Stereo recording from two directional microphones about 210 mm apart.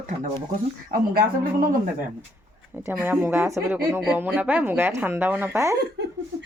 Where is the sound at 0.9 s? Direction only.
45° right (ahead or behind).